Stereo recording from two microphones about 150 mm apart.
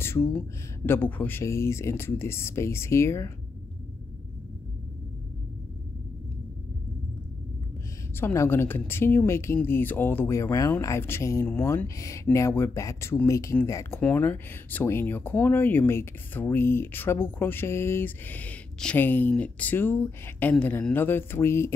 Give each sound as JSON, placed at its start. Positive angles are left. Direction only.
{"t": 0.0, "sound": "speech", "side_deg": 15}
{"t": 8.2, "sound": "speech", "side_deg": 15}